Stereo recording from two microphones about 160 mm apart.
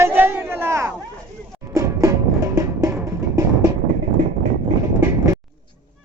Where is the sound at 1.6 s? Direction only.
20° right (ahead or behind).